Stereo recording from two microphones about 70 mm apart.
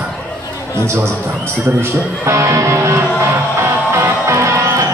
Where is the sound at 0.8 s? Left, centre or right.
Right.